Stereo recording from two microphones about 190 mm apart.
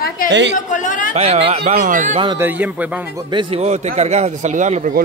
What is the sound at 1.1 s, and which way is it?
Speech, 35° right (ahead or behind).